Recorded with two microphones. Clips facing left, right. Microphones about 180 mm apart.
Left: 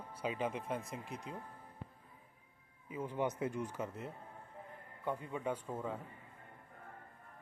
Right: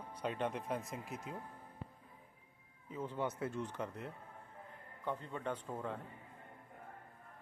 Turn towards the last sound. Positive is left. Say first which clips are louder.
# left 1 dB
turn(degrees=5)  # may be behind; listen again after turning